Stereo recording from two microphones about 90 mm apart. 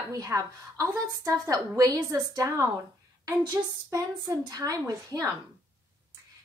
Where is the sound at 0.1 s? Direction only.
35° right (ahead or behind).